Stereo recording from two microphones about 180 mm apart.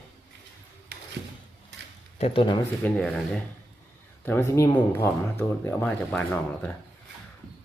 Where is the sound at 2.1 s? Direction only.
35° left (ahead or behind).